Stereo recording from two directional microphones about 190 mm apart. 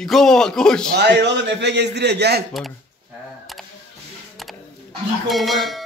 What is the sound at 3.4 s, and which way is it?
Camera, centre (ahead or behind).